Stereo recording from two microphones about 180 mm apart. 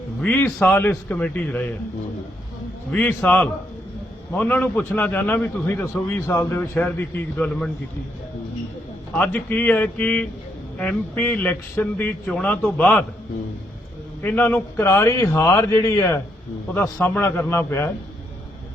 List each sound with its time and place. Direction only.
0.2 s a man's voice: 5° left (ahead or behind)
2.9 s a man's voice: 5° left (ahead or behind)
9.1 s a man's voice: 10° left (ahead or behind)
14.2 s a man's voice: 10° left (ahead or behind)